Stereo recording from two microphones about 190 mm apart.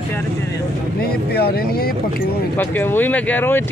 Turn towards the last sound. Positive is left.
turn(degrees=10)  # may be behind; listen again after turning